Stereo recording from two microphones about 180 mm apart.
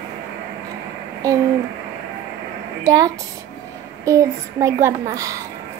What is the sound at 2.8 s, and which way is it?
Speech, 20° right (ahead or behind).